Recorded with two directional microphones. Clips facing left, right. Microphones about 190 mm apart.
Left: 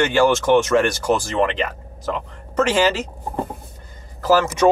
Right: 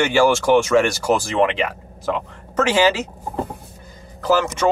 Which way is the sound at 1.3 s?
10° right (ahead or behind).